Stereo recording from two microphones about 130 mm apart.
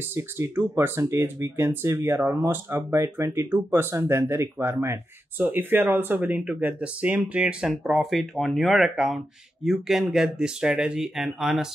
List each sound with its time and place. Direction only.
0.0 s speech: 20° right (ahead or behind); by 11.7 s 5° right (ahead or behind)